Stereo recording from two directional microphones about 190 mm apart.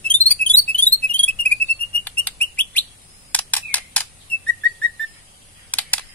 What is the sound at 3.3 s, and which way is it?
Camera, 10° left (ahead or behind).